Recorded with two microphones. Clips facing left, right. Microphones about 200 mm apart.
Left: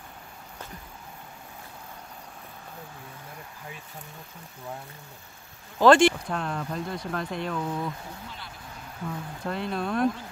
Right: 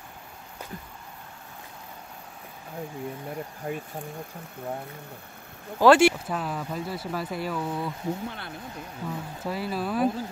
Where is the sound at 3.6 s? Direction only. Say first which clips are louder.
Right 12 dB; 50° right (ahead or behind).